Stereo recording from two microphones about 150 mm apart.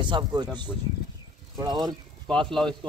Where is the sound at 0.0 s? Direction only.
30° right (ahead or behind).